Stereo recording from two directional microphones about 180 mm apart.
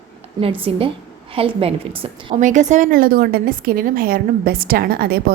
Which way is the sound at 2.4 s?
45° right (ahead or behind).